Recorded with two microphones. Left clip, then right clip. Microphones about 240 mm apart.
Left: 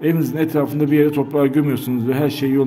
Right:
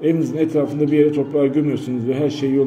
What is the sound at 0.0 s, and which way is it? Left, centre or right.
A man's voice, left.